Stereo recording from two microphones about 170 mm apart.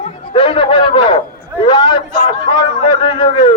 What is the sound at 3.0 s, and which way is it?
Speech, 30° left (ahead or behind).